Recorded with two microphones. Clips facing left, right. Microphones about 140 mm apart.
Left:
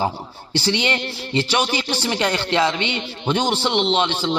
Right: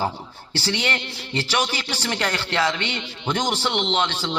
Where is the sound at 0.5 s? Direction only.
15° left (ahead or behind).